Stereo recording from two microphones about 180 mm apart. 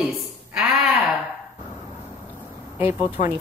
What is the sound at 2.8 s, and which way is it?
Speech, 30° left (ahead or behind).